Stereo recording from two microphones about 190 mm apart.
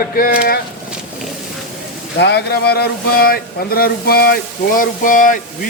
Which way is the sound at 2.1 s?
65° left (ahead or behind).